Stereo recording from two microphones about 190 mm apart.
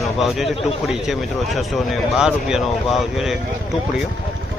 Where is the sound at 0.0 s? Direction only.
Centre (ahead or behind).